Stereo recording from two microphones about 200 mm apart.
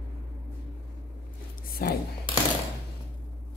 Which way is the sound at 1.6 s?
45° left (ahead or behind).